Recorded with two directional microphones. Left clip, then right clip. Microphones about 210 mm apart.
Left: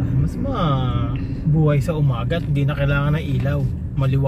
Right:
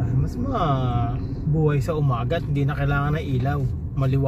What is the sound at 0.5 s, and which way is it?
A man's voice, 55° right (ahead or behind).